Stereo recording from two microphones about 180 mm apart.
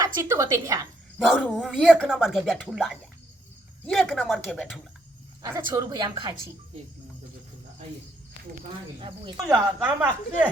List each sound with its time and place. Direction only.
0.0 s a woman's voice: 15° right (ahead or behind)
1.3 s speech: centre (ahead or behind)
5.4 s a woman's voice: 20° right (ahead or behind)
9.0 s a woman's voice: 30° right (ahead or behind)
9.4 s speech: 5° right (ahead or behind)